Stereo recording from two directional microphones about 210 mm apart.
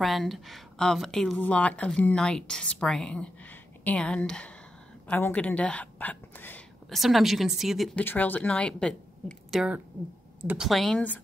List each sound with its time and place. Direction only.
0.0 s a woman's voice: centre (ahead or behind)